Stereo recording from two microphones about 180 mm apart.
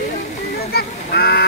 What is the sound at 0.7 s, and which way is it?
Honk, 60° left (ahead or behind).